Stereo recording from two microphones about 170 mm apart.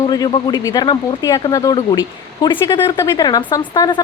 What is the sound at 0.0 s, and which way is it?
Speech, 25° left (ahead or behind).